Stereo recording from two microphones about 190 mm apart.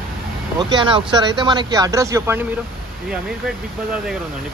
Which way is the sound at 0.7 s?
25° right (ahead or behind).